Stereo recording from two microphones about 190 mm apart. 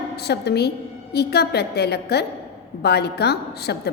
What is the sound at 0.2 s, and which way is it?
A woman's voice, 60° left (ahead or behind).